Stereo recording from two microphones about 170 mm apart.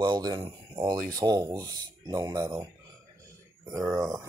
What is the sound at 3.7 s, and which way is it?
Speech, 20° right (ahead or behind).